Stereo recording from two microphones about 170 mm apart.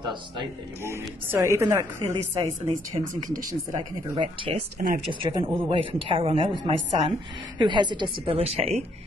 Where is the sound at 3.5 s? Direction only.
20° right (ahead or behind).